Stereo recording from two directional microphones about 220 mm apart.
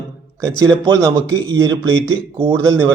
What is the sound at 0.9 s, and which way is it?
Speech, 15° right (ahead or behind).